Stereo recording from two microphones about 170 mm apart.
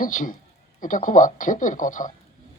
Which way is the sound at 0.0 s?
50° left (ahead or behind).